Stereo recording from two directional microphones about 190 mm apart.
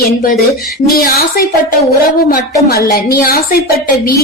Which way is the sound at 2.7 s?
50° left (ahead or behind).